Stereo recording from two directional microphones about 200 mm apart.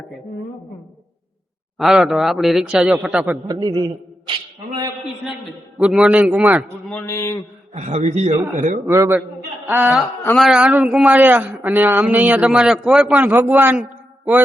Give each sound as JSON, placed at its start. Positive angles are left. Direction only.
{"t": 1.8, "sound": "a man's voice", "side_deg": 0}
{"t": 3.4, "sound": "a man's voice", "side_deg": -20}
{"t": 5.7, "sound": "a man's voice", "side_deg": -5}
{"t": 6.9, "sound": "a man's voice", "side_deg": 10}
{"t": 7.7, "sound": "a man's voice", "side_deg": -35}
{"t": 8.9, "sound": "speech", "side_deg": -10}
{"t": 10.2, "sound": "speech", "side_deg": 0}